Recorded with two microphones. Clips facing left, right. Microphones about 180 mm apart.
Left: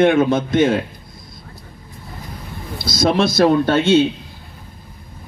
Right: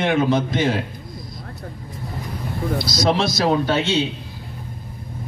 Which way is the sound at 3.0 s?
55° left (ahead or behind).